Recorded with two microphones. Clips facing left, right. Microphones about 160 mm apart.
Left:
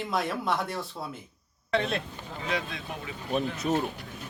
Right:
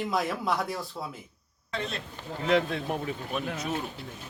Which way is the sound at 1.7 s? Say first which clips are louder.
Left 7 dB; 70° left (ahead or behind).